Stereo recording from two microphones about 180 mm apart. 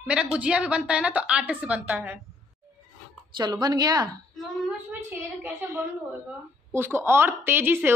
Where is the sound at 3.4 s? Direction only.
25° right (ahead or behind).